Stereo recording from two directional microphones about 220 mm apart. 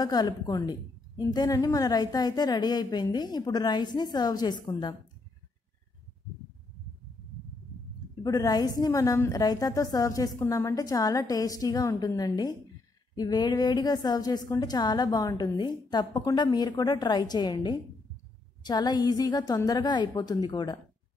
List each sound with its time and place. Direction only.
0.0 s a woman's voice: 15° left (ahead or behind)
8.2 s a woman's voice: 15° left (ahead or behind)